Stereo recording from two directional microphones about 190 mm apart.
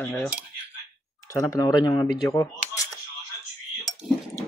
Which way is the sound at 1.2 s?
15° left (ahead or behind).